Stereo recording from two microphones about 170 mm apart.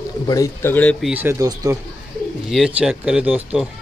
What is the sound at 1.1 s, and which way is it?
Speech, 15° right (ahead or behind).